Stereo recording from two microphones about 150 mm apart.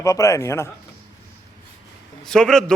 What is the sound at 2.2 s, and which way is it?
Speech, 5° left (ahead or behind).